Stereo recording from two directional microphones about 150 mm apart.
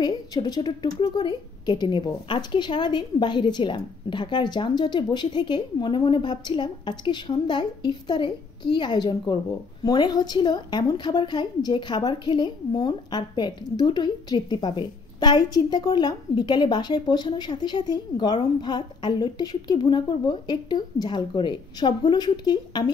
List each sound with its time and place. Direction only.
0.0 s a woman's voice: 30° left (ahead or behind)